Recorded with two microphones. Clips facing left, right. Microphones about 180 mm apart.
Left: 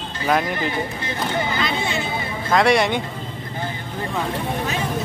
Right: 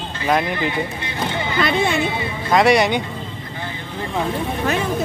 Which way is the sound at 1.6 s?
55° right (ahead or behind).